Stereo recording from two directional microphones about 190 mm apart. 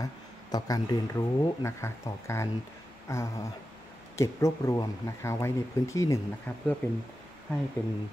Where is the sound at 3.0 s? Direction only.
15° left (ahead or behind).